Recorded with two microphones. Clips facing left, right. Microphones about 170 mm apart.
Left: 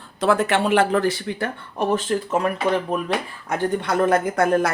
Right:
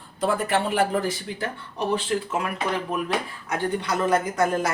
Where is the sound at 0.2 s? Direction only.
85° left; by 1.5 s 70° left (ahead or behind).